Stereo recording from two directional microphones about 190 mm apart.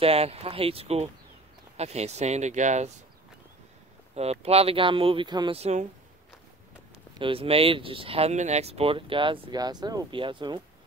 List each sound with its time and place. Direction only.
0.0 s speech: 30° right (ahead or behind)
4.1 s speech: 35° right (ahead or behind)
7.2 s speech: 30° right (ahead or behind)